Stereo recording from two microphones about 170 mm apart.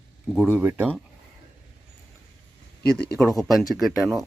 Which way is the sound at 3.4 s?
Centre (ahead or behind).